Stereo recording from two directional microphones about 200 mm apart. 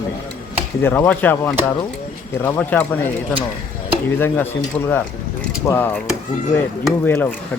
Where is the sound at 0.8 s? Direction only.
10° left (ahead or behind).